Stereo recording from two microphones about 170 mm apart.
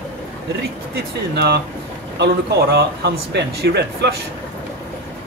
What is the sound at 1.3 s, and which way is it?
Speech, 75° right (ahead or behind).